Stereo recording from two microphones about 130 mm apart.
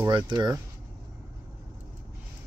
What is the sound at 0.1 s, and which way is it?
Speech, 35° right (ahead or behind).